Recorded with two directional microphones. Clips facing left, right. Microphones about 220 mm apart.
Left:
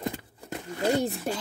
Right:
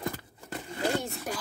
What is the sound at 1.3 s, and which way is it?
Speech, 25° left (ahead or behind).